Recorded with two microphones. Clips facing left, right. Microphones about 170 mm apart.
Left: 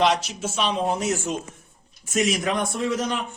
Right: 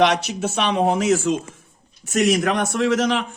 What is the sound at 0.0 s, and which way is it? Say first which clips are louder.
Speech: right 3 dB; 70° right (ahead or behind).